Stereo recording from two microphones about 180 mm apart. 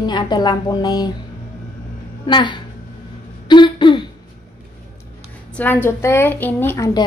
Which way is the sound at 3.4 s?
25° left (ahead or behind).